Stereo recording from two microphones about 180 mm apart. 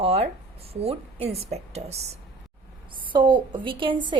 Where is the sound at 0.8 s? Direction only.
35° right (ahead or behind).